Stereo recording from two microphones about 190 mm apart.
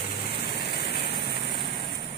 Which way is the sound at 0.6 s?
60° left (ahead or behind).